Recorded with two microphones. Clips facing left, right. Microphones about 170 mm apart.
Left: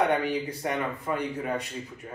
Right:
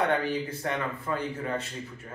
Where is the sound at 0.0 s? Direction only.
15° left (ahead or behind).